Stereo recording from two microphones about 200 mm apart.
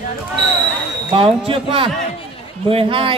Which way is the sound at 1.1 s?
25° right (ahead or behind).